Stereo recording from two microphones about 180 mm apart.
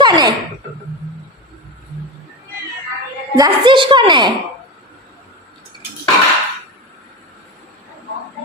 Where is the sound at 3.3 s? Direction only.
25° right (ahead or behind).